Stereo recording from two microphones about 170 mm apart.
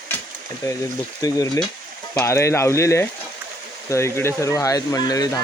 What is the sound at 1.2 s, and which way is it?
Speech, 20° left (ahead or behind).